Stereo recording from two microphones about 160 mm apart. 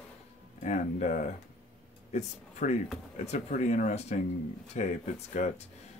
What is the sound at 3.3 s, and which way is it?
Speech, 45° left (ahead or behind).